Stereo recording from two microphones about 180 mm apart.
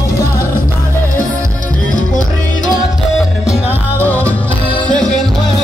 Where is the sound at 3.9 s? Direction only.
10° left (ahead or behind).